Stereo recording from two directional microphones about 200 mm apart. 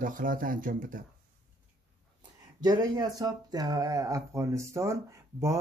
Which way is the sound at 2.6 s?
20° right (ahead or behind).